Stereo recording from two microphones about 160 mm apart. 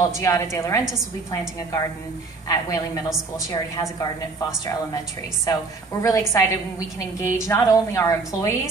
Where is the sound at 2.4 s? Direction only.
20° left (ahead or behind).